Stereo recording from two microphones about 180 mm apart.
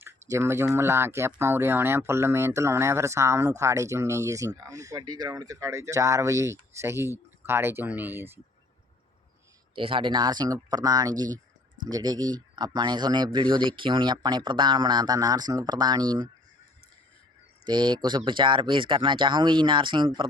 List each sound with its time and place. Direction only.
0.0 s speech: 15° right (ahead or behind)
9.7 s speech: 30° right (ahead or behind)
17.7 s speech: 25° right (ahead or behind)